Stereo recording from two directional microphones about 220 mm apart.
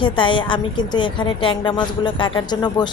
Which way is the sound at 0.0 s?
20° left (ahead or behind).